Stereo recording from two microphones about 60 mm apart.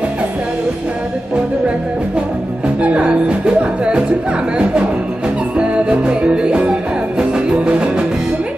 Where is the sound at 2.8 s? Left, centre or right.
Right.